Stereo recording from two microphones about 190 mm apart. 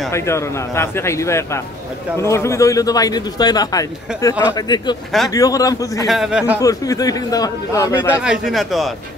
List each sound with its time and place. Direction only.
0.1 s a man's voice: 15° left (ahead or behind)
6.0 s a man's voice: centre (ahead or behind)
6.6 s a man's voice: 20° left (ahead or behind)
8.2 s a man's voice: centre (ahead or behind)